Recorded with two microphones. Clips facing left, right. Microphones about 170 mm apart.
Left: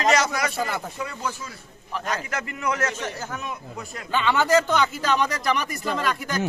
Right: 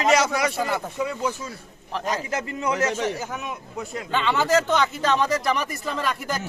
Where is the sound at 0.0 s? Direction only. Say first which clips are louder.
Right 2 dB; 10° right (ahead or behind).